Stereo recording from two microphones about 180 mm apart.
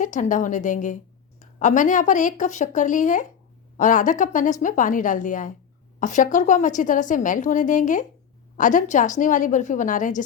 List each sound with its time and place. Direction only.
0.0 s a woman's voice: 45° left (ahead or behind)